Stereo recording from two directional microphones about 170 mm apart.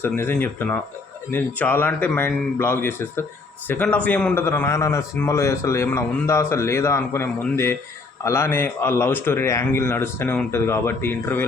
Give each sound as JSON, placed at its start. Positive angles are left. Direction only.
{"t": 0.0, "sound": "a man's voice", "side_deg": 15}